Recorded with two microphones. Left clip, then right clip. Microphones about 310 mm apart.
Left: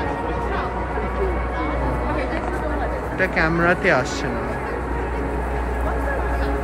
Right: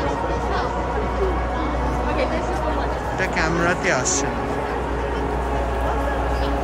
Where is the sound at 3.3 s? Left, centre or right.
Centre.